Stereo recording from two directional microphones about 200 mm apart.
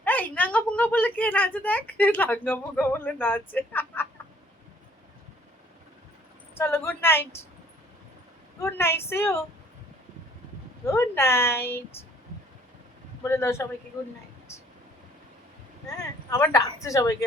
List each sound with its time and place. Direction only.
0.0 s a woman's voice: 10° left (ahead or behind)
6.5 s a woman's voice: 10° left (ahead or behind)
8.6 s a woman's voice: 10° left (ahead or behind)
10.8 s a woman's voice: 10° left (ahead or behind)
13.2 s a woman's voice: 10° left (ahead or behind)
16.3 s a woman's voice: 15° left (ahead or behind)